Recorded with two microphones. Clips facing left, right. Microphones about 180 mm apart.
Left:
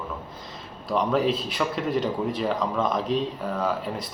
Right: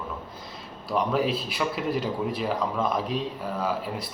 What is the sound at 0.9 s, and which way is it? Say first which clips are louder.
Speech: left 2 dB; 5° right (ahead or behind).